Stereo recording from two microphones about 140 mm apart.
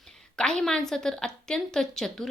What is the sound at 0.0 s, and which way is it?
A woman's voice, 5° left (ahead or behind).